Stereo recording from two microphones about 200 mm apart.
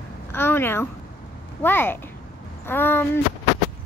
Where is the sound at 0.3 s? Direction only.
10° left (ahead or behind).